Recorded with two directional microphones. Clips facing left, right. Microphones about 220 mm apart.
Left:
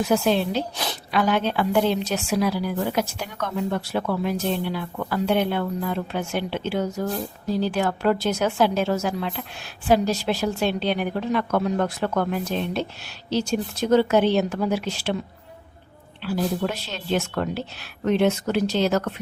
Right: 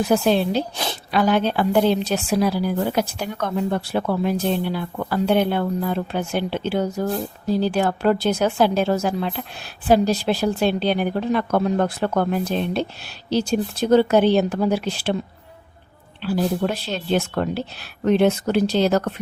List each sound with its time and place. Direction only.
0.1 s a woman's voice: 35° right (ahead or behind)
16.2 s a woman's voice: 35° right (ahead or behind)